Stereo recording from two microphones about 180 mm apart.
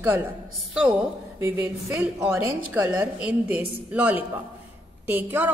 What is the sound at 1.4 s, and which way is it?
A woman's voice, 15° right (ahead or behind).